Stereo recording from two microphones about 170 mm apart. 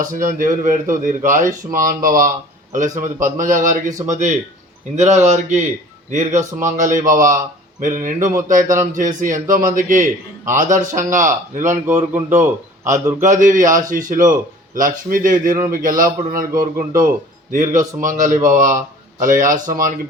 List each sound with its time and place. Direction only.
0.0 s speech: 50° right (ahead or behind)
6.4 s a man's voice: 15° right (ahead or behind)
6.7 s a man's voice: 50° right (ahead or behind)